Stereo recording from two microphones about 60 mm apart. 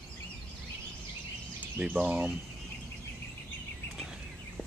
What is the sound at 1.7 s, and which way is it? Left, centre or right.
Speech, right.